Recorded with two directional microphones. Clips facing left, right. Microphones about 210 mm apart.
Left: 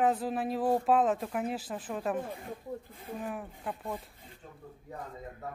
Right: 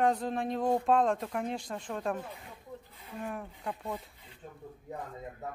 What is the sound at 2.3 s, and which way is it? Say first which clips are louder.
Speech: left 7 dB; 50° left (ahead or behind).